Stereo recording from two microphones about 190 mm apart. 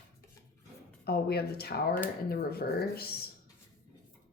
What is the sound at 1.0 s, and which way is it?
Speech, 55° left (ahead or behind).